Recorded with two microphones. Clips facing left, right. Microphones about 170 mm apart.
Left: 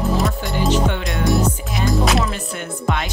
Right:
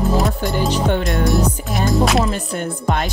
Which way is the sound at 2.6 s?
40° right (ahead or behind).